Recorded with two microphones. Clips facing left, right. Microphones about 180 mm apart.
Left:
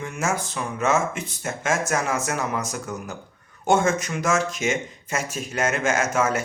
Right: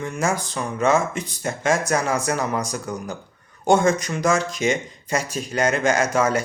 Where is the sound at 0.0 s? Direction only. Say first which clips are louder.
Right 3 dB; 5° left (ahead or behind).